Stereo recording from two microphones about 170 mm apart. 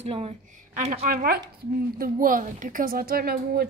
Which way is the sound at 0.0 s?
40° right (ahead or behind).